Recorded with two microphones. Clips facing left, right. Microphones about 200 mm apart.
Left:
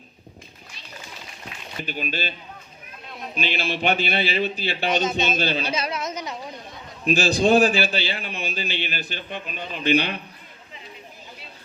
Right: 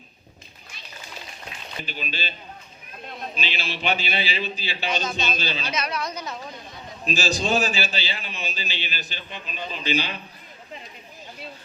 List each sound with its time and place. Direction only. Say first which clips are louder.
1.9 s a man's voice: left 5 dB; 50° left (ahead or behind)
3.3 s a man's voice: left 8 dB; 55° left (ahead or behind)
4.9 s speech: left 4 dB; 20° left (ahead or behind)
5.4 s a man's voice: left 6 dB; 55° left (ahead or behind)
5.7 s speech: left 1 dB; 25° left (ahead or behind)
7.0 s a man's voice: left 6 dB; 60° left (ahead or behind)